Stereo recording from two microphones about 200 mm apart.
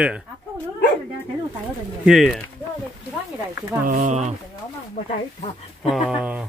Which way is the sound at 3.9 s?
40° right (ahead or behind).